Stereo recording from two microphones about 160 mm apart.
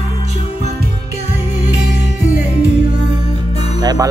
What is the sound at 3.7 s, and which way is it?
Music, 25° right (ahead or behind).